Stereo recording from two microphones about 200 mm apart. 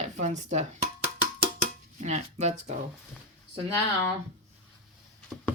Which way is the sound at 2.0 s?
35° right (ahead or behind).